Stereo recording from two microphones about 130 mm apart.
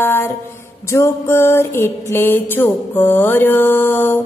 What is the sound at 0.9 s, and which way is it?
Music, 20° left (ahead or behind).